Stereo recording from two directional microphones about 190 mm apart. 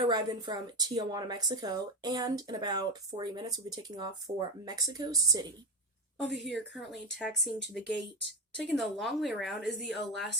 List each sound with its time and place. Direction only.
0.0 s a woman's voice: 20° right (ahead or behind)
6.3 s a woman's voice: centre (ahead or behind)